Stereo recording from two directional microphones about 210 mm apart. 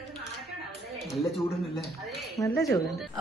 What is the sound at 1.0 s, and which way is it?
Speech, centre (ahead or behind).